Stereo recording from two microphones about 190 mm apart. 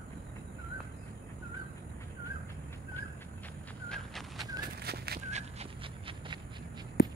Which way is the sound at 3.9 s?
Centre (ahead or behind).